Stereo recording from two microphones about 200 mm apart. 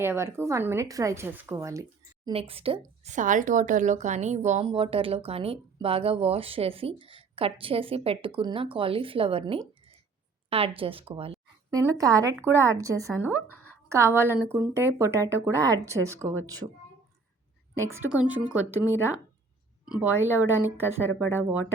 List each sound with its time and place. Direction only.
0.0 s speech: 15° right (ahead or behind)
2.3 s a woman's voice: 30° right (ahead or behind)
11.7 s a woman's voice: 15° right (ahead or behind)
17.7 s speech: 10° right (ahead or behind)